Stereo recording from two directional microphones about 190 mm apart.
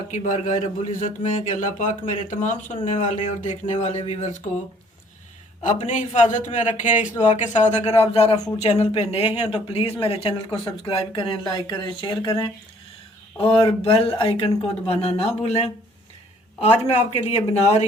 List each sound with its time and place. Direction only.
0.1 s speech: 40° left (ahead or behind)
5.6 s speech: 40° left (ahead or behind)